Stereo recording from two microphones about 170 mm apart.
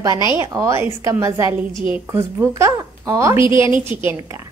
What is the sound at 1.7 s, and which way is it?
Speech, 30° left (ahead or behind).